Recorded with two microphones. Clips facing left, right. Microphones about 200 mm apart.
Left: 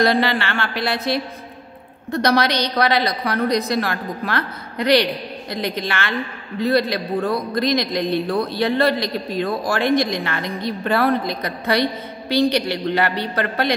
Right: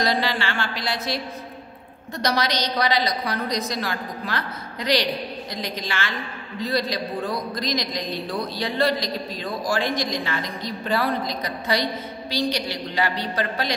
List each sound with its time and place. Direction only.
0.0 s a man's voice: 60° left (ahead or behind)